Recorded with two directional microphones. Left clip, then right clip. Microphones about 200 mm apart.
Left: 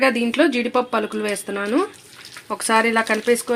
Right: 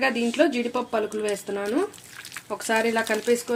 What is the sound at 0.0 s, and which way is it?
Speech, 20° left (ahead or behind).